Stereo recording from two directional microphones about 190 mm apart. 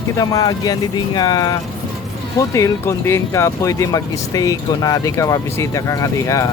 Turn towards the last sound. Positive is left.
turn(degrees=15)  # may be behind; listen again after turning